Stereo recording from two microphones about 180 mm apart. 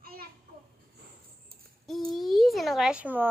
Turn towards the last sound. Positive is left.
turn(degrees=-10)  # may be behind; listen again after turning